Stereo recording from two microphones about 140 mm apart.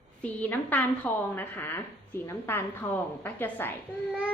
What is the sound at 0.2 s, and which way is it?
A woman's voice, 10° left (ahead or behind).